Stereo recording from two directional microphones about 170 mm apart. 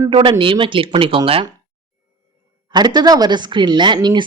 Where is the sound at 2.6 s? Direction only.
25° right (ahead or behind).